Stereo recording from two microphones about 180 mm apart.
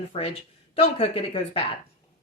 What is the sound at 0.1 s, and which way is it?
A woman's voice, 35° left (ahead or behind).